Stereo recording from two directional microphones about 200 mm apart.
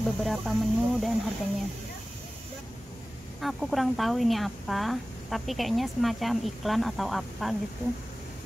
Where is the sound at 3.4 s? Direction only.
Centre (ahead or behind).